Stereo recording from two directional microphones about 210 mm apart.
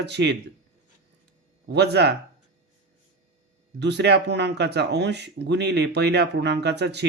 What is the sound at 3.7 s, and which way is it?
Speech, 55° right (ahead or behind).